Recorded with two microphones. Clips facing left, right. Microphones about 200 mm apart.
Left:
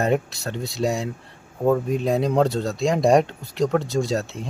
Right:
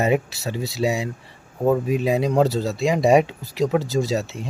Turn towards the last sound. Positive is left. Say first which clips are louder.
# right 1 dB
turn(degrees=0)  # may be behind; listen again after turning